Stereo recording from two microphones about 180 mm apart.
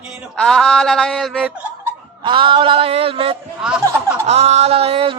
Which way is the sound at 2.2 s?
25° right (ahead or behind).